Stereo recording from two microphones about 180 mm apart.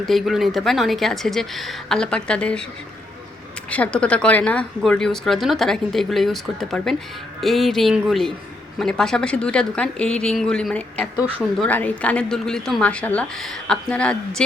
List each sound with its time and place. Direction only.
0.0 s a woman's voice: centre (ahead or behind)
3.7 s a woman's voice: 5° left (ahead or behind)